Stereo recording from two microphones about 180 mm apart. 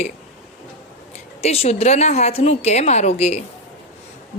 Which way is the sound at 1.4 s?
35° left (ahead or behind).